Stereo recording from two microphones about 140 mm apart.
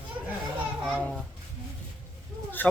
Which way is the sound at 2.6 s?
15° left (ahead or behind).